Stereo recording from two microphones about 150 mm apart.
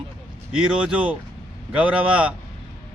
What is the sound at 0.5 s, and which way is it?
Speech, 5° right (ahead or behind).